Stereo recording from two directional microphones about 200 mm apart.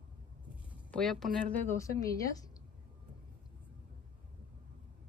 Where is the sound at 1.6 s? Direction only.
15° left (ahead or behind).